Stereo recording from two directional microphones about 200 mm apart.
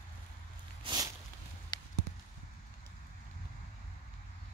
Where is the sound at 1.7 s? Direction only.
20° left (ahead or behind).